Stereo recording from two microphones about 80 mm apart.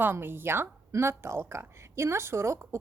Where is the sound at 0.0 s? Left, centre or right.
Right.